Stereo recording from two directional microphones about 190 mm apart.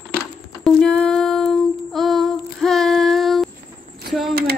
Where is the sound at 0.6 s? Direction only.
5° left (ahead or behind).